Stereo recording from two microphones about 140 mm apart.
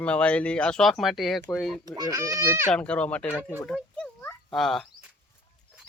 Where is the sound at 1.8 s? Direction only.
25° right (ahead or behind).